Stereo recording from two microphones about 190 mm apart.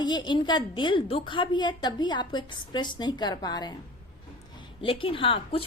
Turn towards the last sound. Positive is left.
turn(degrees=30)  # may be behind; listen again after turning